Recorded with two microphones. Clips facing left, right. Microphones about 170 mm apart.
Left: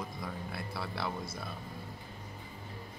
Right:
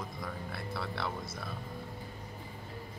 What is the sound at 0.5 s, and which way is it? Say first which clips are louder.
Speech: right 1 dB; centre (ahead or behind).